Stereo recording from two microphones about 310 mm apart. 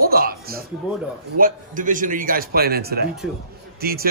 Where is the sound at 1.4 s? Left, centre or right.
Right.